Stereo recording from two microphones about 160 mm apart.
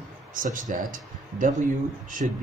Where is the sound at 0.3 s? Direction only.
55° right (ahead or behind).